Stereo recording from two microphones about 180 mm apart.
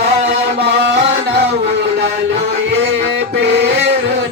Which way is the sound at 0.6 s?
70° right (ahead or behind).